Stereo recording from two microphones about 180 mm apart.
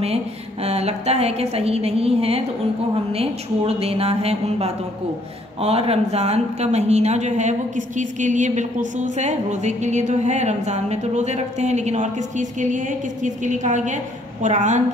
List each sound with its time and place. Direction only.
0.0 s speech: 35° right (ahead or behind)